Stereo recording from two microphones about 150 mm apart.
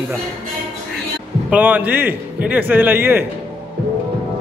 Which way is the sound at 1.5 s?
10° right (ahead or behind).